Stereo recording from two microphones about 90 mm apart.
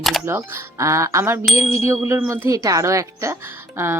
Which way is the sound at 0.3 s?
30° right (ahead or behind).